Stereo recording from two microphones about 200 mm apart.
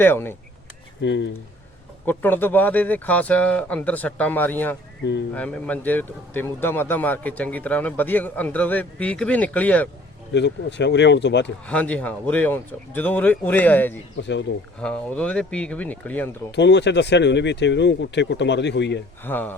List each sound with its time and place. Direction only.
0.0 s a man's voice: 10° left (ahead or behind)
1.0 s speech: 65° left (ahead or behind)
2.0 s a man's voice: 10° left (ahead or behind)
10.3 s speech: 60° left (ahead or behind)
11.6 s a man's voice: 5° left (ahead or behind)
14.2 s speech: 65° left (ahead or behind)
14.8 s speech: 5° left (ahead or behind)
16.5 s speech: 60° left (ahead or behind)
19.2 s a man's voice: 10° left (ahead or behind)